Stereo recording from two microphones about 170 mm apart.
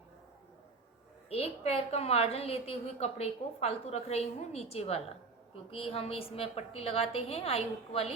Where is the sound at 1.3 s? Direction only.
35° left (ahead or behind).